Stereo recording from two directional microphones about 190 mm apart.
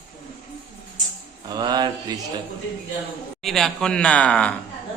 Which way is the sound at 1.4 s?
20° right (ahead or behind).